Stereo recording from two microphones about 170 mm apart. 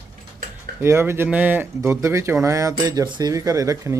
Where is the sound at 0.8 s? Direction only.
15° right (ahead or behind).